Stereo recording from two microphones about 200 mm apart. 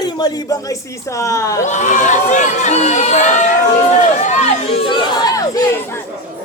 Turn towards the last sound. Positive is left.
turn(degrees=15)  # may be behind; listen again after turning